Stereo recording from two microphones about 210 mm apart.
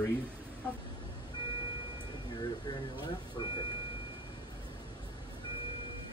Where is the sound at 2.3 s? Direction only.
20° left (ahead or behind).